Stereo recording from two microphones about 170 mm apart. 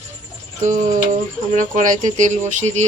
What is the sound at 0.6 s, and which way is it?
Speech, 45° right (ahead or behind).